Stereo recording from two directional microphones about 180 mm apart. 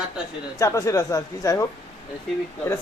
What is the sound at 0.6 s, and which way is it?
Speech, 15° left (ahead or behind).